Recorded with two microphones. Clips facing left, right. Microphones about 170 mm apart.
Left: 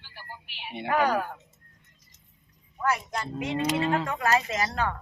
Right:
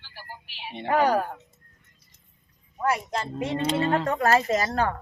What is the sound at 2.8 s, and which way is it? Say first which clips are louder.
Livestock: right 2 dB; 30° right (ahead or behind).